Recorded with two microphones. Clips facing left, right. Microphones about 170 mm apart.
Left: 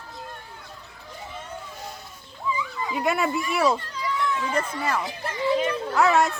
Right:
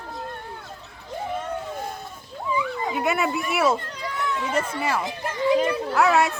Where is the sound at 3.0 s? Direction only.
Centre (ahead or behind).